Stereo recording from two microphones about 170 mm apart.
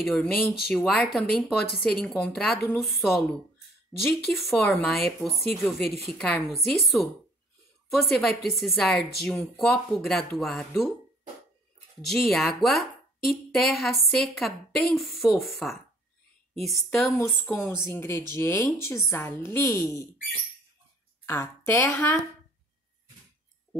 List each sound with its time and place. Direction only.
0.1 s a woman's voice: 5° left (ahead or behind)
12.0 s a woman's voice: centre (ahead or behind)
17.2 s a woman's voice: 10° left (ahead or behind)
21.3 s a woman's voice: 15° left (ahead or behind)